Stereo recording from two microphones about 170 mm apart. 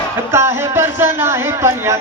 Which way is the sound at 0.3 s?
15° right (ahead or behind).